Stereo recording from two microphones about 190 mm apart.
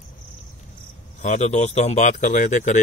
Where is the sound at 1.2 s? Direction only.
40° left (ahead or behind).